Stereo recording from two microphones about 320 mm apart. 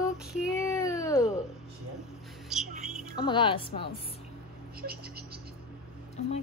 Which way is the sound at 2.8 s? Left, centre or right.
Centre.